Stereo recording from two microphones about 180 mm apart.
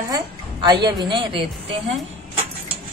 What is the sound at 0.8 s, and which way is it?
Speech, 25° right (ahead or behind).